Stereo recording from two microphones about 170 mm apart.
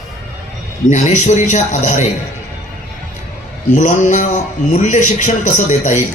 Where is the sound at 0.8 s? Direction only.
45° left (ahead or behind).